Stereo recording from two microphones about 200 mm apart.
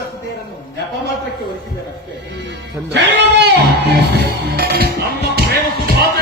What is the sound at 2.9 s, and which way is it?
Music, 55° right (ahead or behind).